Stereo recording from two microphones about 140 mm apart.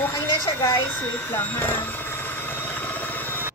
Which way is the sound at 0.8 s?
10° left (ahead or behind).